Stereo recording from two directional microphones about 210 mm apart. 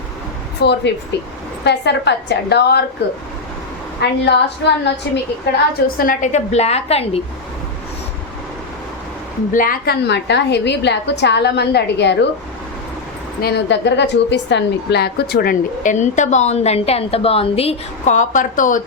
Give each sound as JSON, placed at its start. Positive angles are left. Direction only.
{"t": 0.6, "sound": "a woman's voice", "side_deg": 50}
{"t": 4.3, "sound": "a woman's voice", "side_deg": 55}
{"t": 6.0, "sound": "a woman's voice", "side_deg": 40}
{"t": 9.5, "sound": "a woman's voice", "side_deg": 40}
{"t": 13.4, "sound": "a woman's voice", "side_deg": 50}